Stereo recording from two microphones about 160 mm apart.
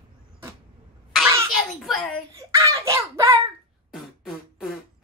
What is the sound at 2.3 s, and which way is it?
A child's voice, 20° right (ahead or behind).